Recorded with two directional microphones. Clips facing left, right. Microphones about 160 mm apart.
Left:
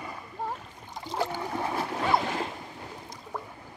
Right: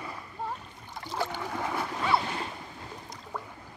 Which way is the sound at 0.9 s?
15° left (ahead or behind).